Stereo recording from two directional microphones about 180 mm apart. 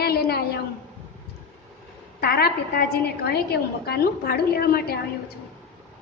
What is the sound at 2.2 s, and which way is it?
A woman's voice, 60° left (ahead or behind).